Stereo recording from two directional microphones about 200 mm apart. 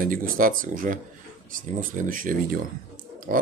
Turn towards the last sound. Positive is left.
turn(degrees=-45)  # may be behind; listen again after turning